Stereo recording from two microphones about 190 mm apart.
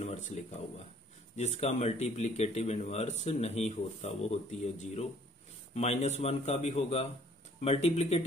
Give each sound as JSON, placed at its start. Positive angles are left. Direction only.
{"t": 0.0, "sound": "speech", "side_deg": 35}